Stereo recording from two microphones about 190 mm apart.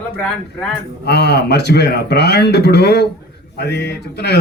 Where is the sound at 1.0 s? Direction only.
60° left (ahead or behind).